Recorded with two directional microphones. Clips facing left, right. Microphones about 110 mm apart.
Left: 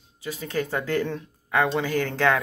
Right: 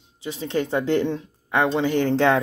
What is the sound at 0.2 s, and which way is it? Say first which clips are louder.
Speech: right 3 dB; 25° right (ahead or behind).